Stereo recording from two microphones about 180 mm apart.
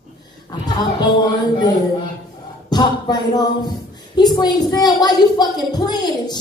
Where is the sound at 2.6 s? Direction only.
20° left (ahead or behind).